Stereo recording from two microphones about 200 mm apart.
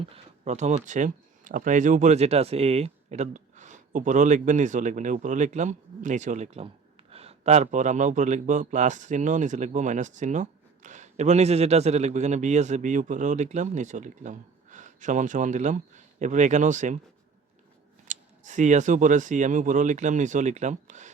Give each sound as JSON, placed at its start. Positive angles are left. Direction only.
{"t": 0.0, "sound": "speech", "side_deg": -35}
{"t": 18.1, "sound": "speech", "side_deg": -40}